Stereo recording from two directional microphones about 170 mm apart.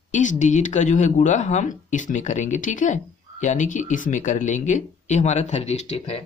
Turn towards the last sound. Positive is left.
turn(degrees=40)  # may be behind; listen again after turning